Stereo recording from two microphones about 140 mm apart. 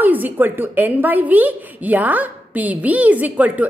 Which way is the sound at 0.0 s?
10° right (ahead or behind).